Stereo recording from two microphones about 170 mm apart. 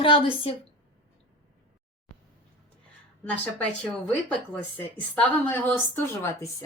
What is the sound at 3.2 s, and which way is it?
Speech, 10° left (ahead or behind).